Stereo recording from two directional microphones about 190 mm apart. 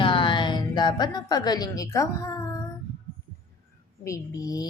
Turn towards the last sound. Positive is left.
turn(degrees=20)  # may be behind; listen again after turning